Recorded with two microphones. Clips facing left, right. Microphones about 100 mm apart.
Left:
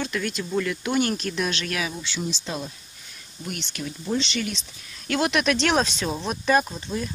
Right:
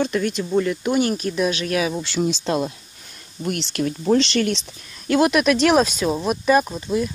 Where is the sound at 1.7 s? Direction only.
35° right (ahead or behind).